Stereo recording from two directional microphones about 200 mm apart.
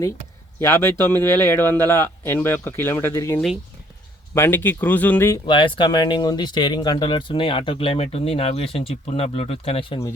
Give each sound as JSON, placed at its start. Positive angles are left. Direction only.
{"t": 0.6, "sound": "speech", "side_deg": 10}
{"t": 5.5, "sound": "speech", "side_deg": 25}